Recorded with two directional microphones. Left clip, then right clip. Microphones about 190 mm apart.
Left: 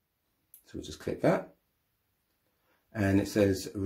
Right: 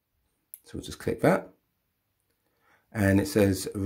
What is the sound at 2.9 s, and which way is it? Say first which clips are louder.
Speech: right 4 dB; 30° right (ahead or behind).